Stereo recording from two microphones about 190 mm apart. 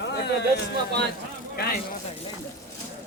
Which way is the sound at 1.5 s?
55° left (ahead or behind).